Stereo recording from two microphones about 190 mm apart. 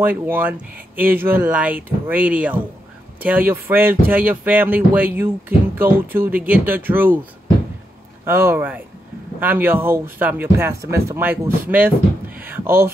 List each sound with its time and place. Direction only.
0.0 s speech: 10° right (ahead or behind)
8.3 s speech: 15° right (ahead or behind)